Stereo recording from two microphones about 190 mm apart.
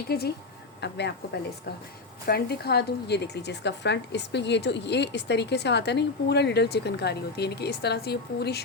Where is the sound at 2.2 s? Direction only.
55° left (ahead or behind).